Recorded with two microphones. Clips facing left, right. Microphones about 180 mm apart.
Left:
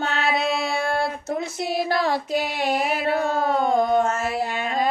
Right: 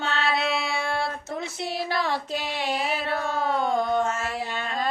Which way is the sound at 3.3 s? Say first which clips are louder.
Left 1 dB; 45° left (ahead or behind).